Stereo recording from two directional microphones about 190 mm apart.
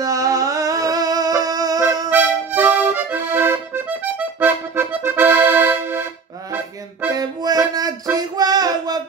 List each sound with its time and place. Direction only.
0.0 s music: 20° right (ahead or behind)
2.0 s accordion: 10° right (ahead or behind)
6.5 s music: 10° right (ahead or behind)